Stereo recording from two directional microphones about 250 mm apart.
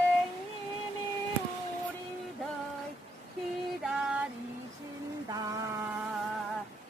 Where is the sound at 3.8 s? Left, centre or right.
Centre.